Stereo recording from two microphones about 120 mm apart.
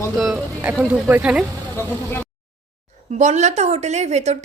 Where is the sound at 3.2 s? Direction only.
75° right (ahead or behind).